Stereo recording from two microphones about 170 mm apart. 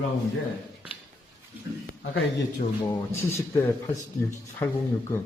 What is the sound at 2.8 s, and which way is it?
Speech, 15° left (ahead or behind).